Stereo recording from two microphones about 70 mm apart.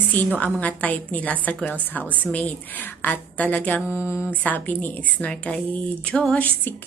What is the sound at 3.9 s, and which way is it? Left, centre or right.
Speech, left.